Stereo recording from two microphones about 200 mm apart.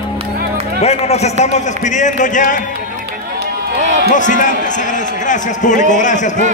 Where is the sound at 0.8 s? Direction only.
30° left (ahead or behind).